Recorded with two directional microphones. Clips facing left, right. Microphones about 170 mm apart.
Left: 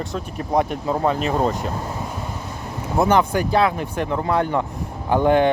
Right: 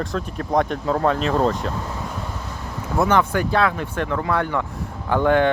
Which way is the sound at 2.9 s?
15° left (ahead or behind).